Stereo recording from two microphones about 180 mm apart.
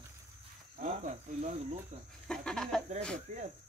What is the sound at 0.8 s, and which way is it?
Cricket, 40° right (ahead or behind).